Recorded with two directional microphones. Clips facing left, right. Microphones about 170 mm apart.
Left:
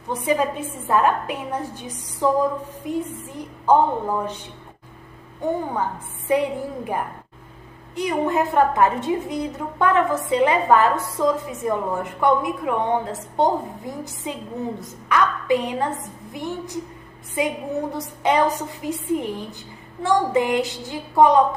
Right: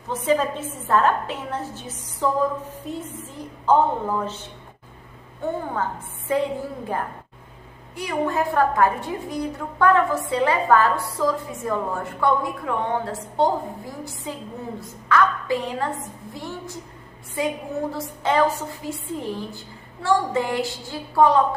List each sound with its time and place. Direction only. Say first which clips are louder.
0.1 s a woman's voice: even; 10° left (ahead or behind)
5.4 s a woman's voice: left 2 dB; 15° left (ahead or behind)